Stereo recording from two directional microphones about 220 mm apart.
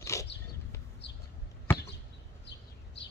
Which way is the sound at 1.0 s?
50° left (ahead or behind).